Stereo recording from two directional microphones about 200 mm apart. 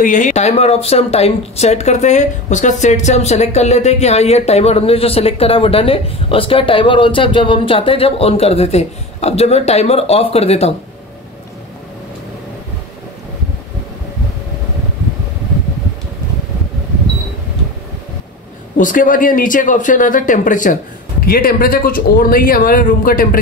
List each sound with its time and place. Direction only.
0.0 s speech: 40° left (ahead or behind)
18.8 s speech: 40° left (ahead or behind)